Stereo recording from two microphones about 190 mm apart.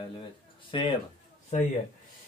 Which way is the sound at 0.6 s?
25° left (ahead or behind).